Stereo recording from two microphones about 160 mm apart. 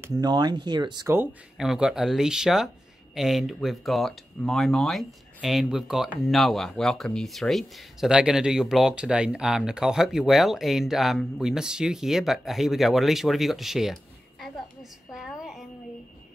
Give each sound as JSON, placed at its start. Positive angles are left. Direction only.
{"t": 0.2, "sound": "speech", "side_deg": -25}
{"t": 1.0, "sound": "speech", "side_deg": -15}
{"t": 1.6, "sound": "speech", "side_deg": -5}
{"t": 14.4, "sound": "a sound", "side_deg": 0}